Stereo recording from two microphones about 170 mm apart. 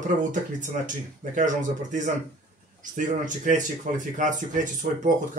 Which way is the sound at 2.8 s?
50° right (ahead or behind).